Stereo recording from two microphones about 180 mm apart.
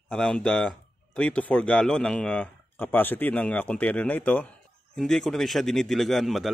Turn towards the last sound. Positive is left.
turn(degrees=0)  # may be behind; listen again after turning